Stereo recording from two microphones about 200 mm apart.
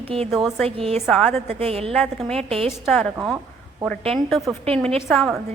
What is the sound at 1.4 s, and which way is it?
Speech, 30° right (ahead or behind).